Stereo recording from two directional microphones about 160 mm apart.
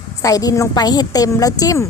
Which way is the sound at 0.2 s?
20° left (ahead or behind).